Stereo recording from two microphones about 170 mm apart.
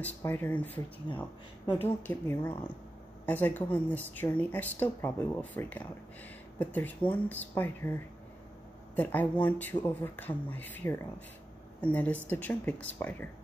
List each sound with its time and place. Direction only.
0.0 s speech: 10° left (ahead or behind)
1.1 s speech: 25° left (ahead or behind)
1.7 s speech: 15° left (ahead or behind)
8.9 s speech: 10° left (ahead or behind)